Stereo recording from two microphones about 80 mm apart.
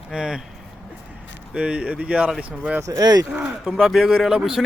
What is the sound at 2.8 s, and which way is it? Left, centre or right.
Speech, right.